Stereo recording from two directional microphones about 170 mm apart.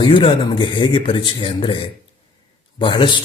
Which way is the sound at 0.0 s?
30° left (ahead or behind).